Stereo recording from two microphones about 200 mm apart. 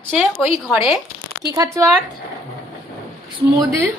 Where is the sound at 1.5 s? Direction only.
15° right (ahead or behind).